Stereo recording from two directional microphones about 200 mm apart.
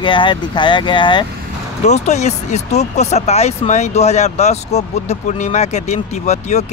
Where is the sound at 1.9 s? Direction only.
35° left (ahead or behind).